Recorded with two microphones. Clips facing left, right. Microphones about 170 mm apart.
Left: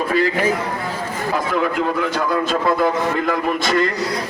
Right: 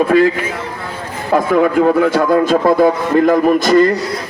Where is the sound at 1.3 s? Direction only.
55° right (ahead or behind).